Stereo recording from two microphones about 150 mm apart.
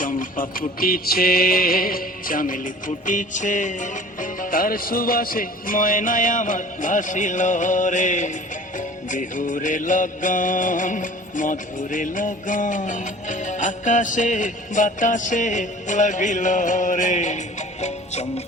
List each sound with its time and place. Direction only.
0.0 s music: 60° left (ahead or behind)